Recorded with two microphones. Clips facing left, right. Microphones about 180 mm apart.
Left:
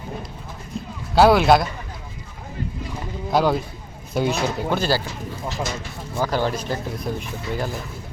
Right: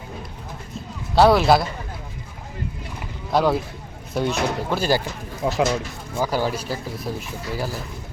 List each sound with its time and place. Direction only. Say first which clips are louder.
1.1 s a man's voice: left 1 dB; centre (ahead or behind)
3.3 s a man's voice: even; centre (ahead or behind)
4.8 s speech: right 3 dB; 15° right (ahead or behind)
5.4 s speech: right 9 dB; 80° right
6.1 s speech: even; 10° right (ahead or behind)